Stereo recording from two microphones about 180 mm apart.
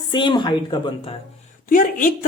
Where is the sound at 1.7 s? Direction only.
50° left (ahead or behind).